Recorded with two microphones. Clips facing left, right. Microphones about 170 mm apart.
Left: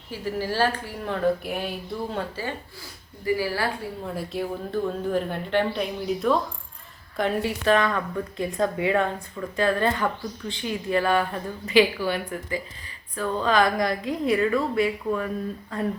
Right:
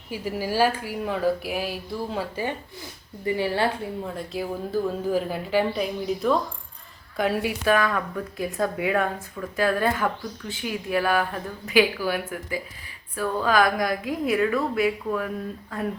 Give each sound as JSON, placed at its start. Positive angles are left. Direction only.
{"t": 0.1, "sound": "speech", "side_deg": -10}
{"t": 2.3, "sound": "a woman's voice", "side_deg": -20}
{"t": 4.0, "sound": "speech", "side_deg": 5}